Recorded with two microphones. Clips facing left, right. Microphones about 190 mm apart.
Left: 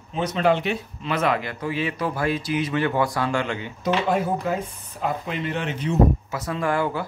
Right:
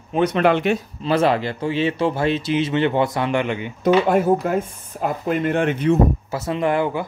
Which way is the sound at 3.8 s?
55° right (ahead or behind).